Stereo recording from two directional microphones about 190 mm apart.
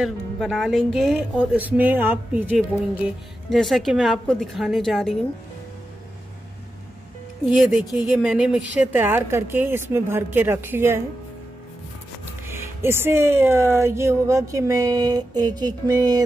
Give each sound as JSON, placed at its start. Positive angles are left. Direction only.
{"t": 0.0, "sound": "speech", "side_deg": 0}
{"t": 7.4, "sound": "speech", "side_deg": -5}
{"t": 12.4, "sound": "speech", "side_deg": -10}